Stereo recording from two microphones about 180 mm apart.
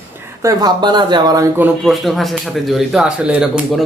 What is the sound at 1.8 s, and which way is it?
Speech, centre (ahead or behind).